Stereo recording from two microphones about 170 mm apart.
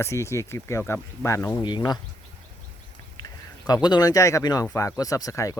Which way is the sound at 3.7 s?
25° left (ahead or behind).